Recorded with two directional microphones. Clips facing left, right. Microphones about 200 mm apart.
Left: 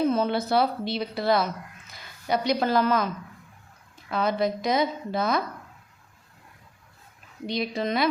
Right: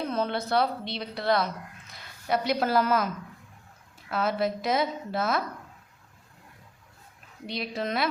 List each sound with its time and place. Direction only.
0.0 s a woman's voice: 5° left (ahead or behind)
4.1 s a woman's voice: 5° right (ahead or behind)
7.4 s a woman's voice: centre (ahead or behind)